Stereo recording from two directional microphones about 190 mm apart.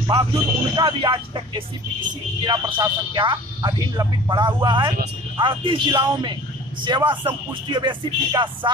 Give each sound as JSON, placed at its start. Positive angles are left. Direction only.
{"t": 0.0, "sound": "a man's voice", "side_deg": -25}